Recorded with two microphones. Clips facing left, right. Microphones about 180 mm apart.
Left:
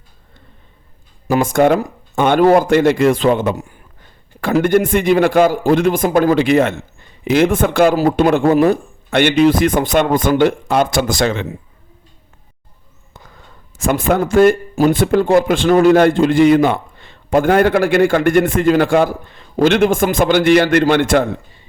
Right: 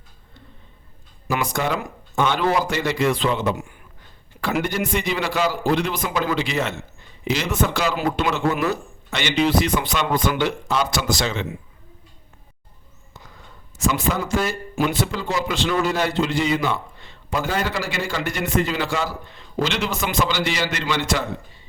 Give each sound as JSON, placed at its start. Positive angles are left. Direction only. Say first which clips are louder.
{"t": 1.3, "sound": "speech", "louder": "left 11 dB", "side_deg": 50}
{"t": 4.6, "sound": "speech", "louder": "left 11 dB", "side_deg": 50}
{"t": 7.9, "sound": "speech", "louder": "left 10 dB", "side_deg": 40}
{"t": 13.7, "sound": "speech", "louder": "left 7 dB", "side_deg": 55}